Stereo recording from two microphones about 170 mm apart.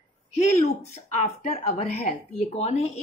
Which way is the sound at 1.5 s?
40° left (ahead or behind).